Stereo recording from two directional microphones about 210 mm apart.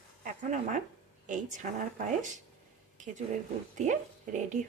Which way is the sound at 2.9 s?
35° right (ahead or behind).